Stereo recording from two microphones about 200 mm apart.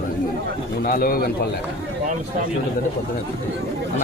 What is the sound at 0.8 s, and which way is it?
Speech, 45° left (ahead or behind).